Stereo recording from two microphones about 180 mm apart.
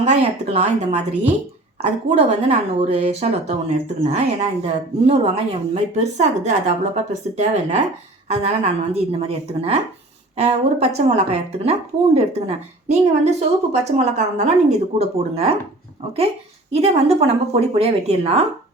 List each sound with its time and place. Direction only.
0.0 s a woman's voice: 35° right (ahead or behind)
16.7 s a woman's voice: 35° right (ahead or behind)